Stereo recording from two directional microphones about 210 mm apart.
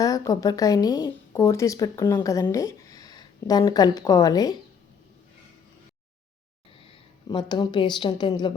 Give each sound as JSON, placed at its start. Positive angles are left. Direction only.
{"t": 0.0, "sound": "a woman's voice", "side_deg": 15}
{"t": 6.7, "sound": "speech", "side_deg": 25}